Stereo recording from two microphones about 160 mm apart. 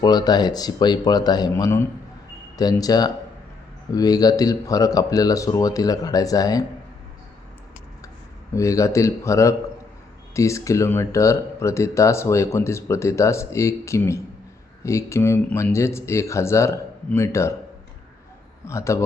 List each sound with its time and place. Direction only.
0.0 s speech: 25° left (ahead or behind)
8.5 s speech: 20° left (ahead or behind)
18.6 s speech: 20° left (ahead or behind)